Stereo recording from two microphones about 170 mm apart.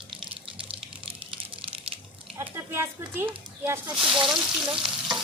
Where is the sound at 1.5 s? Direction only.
30° right (ahead or behind).